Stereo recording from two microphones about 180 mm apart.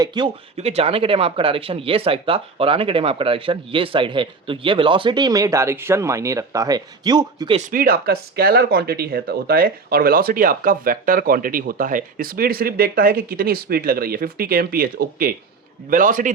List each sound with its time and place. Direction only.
0.0 s speech: 25° right (ahead or behind)
7.7 s a man's voice: 55° right (ahead or behind)